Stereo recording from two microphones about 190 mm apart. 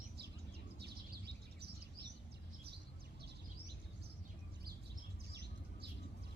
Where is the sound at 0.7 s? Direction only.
60° right (ahead or behind).